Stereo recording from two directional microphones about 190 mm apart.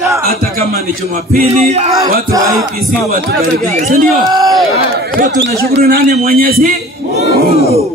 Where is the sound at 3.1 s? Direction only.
55° right (ahead or behind).